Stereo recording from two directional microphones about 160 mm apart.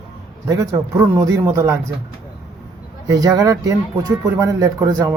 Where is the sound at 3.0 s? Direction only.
25° right (ahead or behind).